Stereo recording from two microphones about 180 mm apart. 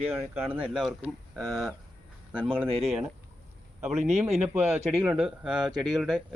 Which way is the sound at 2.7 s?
35° right (ahead or behind).